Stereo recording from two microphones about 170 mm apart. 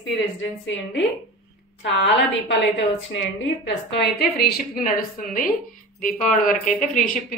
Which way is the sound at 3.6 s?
75° left (ahead or behind).